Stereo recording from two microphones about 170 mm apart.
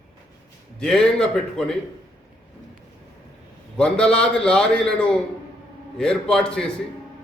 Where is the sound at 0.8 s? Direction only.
5° left (ahead or behind).